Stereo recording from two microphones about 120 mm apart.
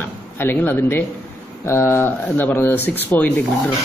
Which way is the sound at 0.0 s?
15° left (ahead or behind).